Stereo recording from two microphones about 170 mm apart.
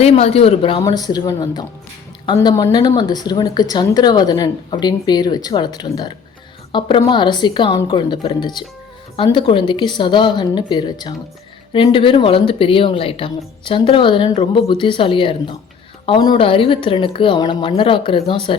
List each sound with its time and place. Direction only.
0.0 s a woman's voice: 40° left (ahead or behind)
0.8 s a woman's voice: 25° left (ahead or behind)